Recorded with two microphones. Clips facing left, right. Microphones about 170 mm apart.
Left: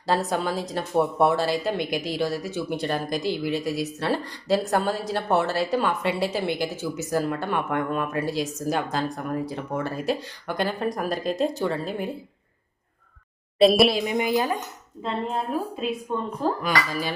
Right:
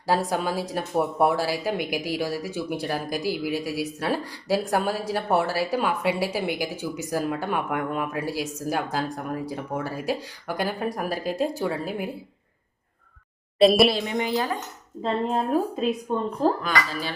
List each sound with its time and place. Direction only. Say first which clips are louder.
0.0 s speech: even; 10° right (ahead or behind)
13.6 s a woman's voice: even; centre (ahead or behind)
14.1 s a woman's voice: left 2 dB; 10° left (ahead or behind)
16.1 s a woman's voice: even; 30° right (ahead or behind)
16.6 s a woman's voice: left 1 dB; 15° left (ahead or behind)